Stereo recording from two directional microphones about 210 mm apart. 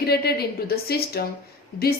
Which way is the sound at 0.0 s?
50° left (ahead or behind).